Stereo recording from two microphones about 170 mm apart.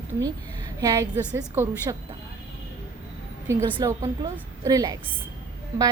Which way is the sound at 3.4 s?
15° right (ahead or behind).